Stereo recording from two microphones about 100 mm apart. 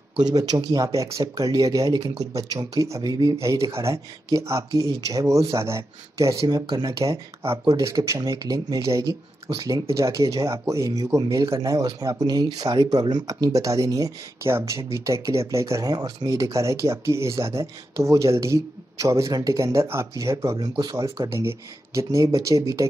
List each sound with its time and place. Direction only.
0.3 s speech: 40° right (ahead or behind)